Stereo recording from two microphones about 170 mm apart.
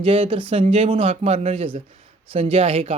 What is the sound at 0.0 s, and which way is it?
Speech, 30° right (ahead or behind).